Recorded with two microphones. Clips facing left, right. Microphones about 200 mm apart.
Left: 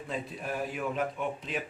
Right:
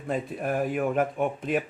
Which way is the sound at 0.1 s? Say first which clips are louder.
Right 8 dB; 55° right (ahead or behind).